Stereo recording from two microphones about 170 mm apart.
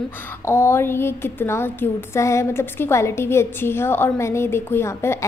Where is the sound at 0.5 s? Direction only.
15° left (ahead or behind).